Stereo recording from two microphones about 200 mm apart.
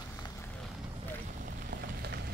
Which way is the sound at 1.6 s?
50° right (ahead or behind).